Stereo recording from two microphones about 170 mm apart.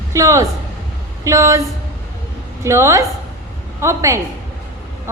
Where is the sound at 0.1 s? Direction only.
20° right (ahead or behind).